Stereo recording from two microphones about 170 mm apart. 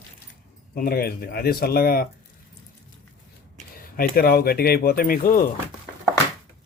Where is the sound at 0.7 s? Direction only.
60° left (ahead or behind).